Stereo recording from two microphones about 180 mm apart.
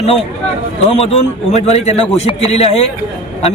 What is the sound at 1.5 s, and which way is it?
A man's voice, 35° left (ahead or behind).